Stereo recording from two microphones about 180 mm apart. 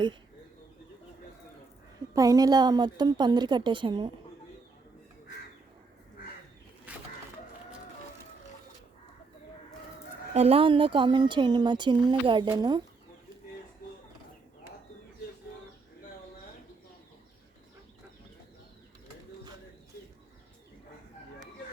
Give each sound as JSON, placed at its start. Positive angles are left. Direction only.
{"t": 2.1, "sound": "speech", "side_deg": -20}
{"t": 10.3, "sound": "speech", "side_deg": -35}